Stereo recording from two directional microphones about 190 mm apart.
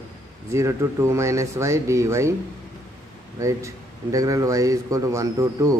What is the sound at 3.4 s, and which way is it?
A man's voice, 15° right (ahead or behind).